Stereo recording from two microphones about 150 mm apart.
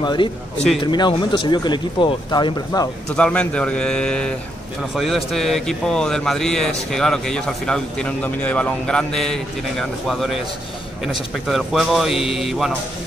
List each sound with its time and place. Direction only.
0.0 s speech: 30° left (ahead or behind)
3.2 s speech: 5° left (ahead or behind)